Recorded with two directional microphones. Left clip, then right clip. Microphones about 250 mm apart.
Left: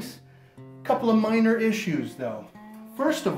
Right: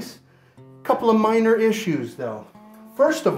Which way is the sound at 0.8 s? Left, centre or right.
Right.